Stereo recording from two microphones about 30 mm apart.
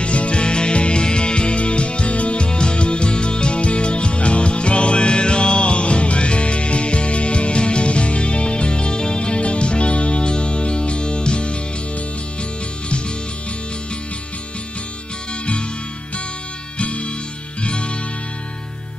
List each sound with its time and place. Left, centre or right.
0.0 s music: left
16.8 s music: left